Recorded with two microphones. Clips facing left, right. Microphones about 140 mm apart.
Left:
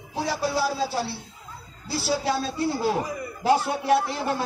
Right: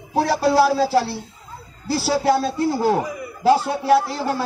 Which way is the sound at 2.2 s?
50° right (ahead or behind).